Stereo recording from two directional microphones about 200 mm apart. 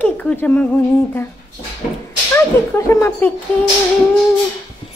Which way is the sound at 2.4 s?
15° left (ahead or behind).